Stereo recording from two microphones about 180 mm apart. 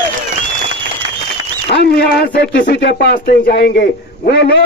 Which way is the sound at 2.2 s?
65° left (ahead or behind).